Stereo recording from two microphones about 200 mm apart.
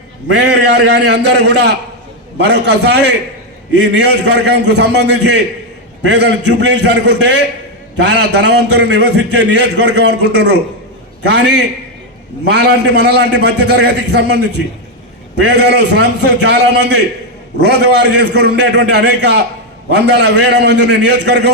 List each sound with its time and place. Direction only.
0.3 s a man's voice: 60° right (ahead or behind)